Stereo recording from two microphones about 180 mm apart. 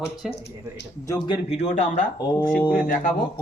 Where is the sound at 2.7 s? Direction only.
50° left (ahead or behind).